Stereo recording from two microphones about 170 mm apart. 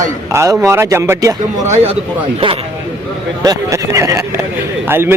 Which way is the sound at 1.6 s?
40° right (ahead or behind).